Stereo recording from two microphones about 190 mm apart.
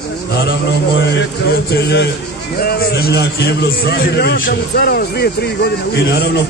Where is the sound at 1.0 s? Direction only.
70° left (ahead or behind).